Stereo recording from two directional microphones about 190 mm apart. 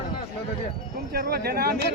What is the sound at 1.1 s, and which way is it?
Speech, 50° right (ahead or behind).